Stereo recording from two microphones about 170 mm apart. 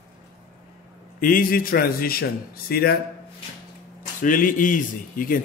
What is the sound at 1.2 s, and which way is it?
A man's voice, 55° left (ahead or behind).